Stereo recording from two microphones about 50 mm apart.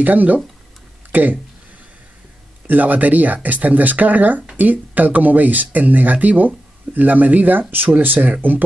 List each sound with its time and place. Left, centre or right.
0.0 s speech: right
2.6 s speech: right